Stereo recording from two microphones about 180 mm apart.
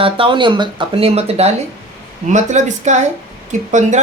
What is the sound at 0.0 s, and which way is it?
A woman's voice, 30° right (ahead or behind).